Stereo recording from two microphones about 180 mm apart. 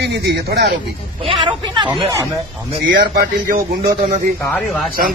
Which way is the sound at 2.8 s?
65° right (ahead or behind).